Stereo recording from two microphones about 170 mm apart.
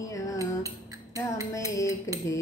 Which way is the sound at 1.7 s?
20° left (ahead or behind).